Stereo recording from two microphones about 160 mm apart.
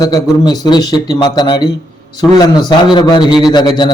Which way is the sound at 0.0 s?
25° left (ahead or behind).